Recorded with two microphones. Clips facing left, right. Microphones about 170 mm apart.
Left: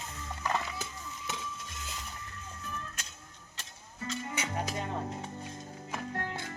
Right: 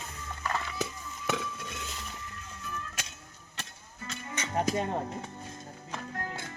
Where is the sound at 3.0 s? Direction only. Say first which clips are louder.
Right 5 dB; 85° right.